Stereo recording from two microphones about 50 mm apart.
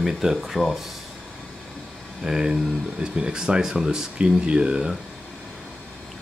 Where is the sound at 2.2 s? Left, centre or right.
Centre.